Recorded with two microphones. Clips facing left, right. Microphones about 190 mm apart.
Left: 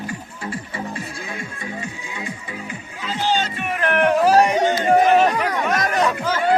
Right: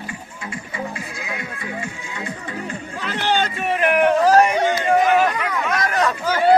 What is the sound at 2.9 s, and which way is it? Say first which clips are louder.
Music: even; 70° right (ahead or behind).